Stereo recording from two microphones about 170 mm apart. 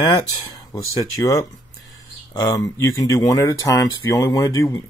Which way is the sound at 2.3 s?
20° left (ahead or behind).